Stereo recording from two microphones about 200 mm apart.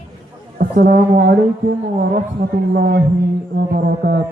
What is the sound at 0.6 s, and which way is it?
Speech, 45° right (ahead or behind).